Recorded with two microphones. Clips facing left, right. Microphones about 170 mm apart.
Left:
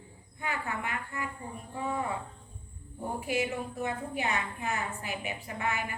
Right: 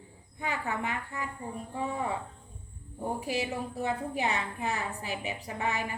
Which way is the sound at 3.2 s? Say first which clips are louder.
Left 3 dB; 35° right (ahead or behind).